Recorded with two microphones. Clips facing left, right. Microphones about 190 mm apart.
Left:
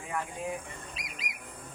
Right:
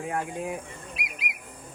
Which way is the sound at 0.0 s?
65° right (ahead or behind).